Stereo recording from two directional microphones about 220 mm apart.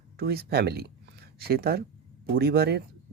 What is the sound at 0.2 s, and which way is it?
Speech, 45° right (ahead or behind).